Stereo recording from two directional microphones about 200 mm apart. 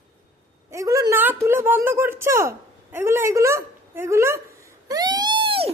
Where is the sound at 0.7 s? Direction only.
15° right (ahead or behind).